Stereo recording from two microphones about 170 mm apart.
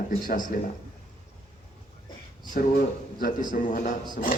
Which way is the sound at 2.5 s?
55° left (ahead or behind).